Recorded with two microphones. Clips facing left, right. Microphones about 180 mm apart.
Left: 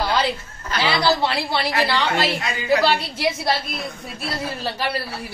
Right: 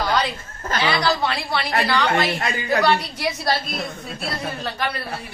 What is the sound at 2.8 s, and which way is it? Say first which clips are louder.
Speech: even; 25° left (ahead or behind).